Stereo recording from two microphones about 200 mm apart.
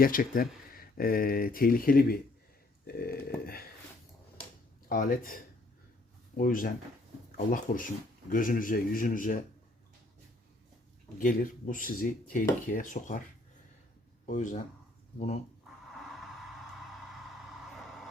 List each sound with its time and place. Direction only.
0.0 s speech: 45° left (ahead or behind)
2.8 s a sound: 50° left (ahead or behind)
4.9 s speech: 45° left (ahead or behind)
11.2 s speech: 45° left (ahead or behind)
14.3 s speech: 35° left (ahead or behind)
15.9 s a sound: centre (ahead or behind)